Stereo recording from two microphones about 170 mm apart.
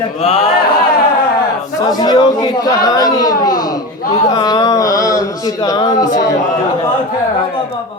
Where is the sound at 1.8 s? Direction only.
25° left (ahead or behind).